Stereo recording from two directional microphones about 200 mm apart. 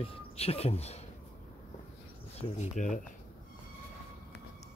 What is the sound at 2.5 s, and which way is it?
Speech, 35° left (ahead or behind).